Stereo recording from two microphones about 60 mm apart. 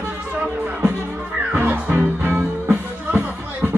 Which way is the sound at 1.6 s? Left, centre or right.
Right.